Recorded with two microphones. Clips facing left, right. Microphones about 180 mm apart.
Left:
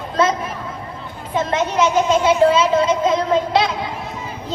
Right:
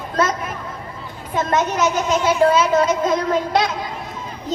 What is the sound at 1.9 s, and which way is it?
Speech, 25° left (ahead or behind).